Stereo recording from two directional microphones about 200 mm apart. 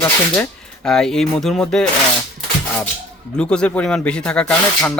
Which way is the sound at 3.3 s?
5° left (ahead or behind).